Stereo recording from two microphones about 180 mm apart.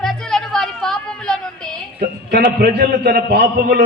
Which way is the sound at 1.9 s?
60° right (ahead or behind).